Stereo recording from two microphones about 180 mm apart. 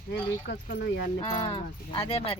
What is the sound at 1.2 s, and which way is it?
Speech, 30° left (ahead or behind).